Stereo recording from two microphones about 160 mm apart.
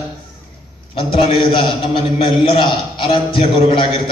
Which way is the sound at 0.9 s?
35° left (ahead or behind).